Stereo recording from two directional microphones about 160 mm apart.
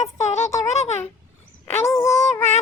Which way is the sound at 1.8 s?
15° left (ahead or behind).